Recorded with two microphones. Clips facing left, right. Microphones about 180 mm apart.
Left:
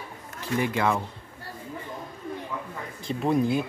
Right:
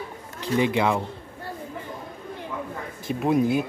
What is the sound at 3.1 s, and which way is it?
Speech, 10° right (ahead or behind).